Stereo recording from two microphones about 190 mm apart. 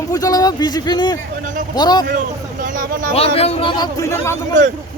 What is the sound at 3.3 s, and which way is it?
Speech, 30° left (ahead or behind).